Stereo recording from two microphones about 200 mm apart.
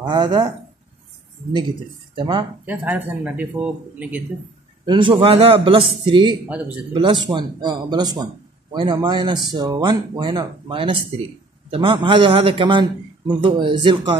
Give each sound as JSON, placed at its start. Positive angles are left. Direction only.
{"t": 0.0, "sound": "speech", "side_deg": -20}
{"t": 2.1, "sound": "speech", "side_deg": -25}
{"t": 2.6, "sound": "speech", "side_deg": -5}
{"t": 4.8, "sound": "speech", "side_deg": -25}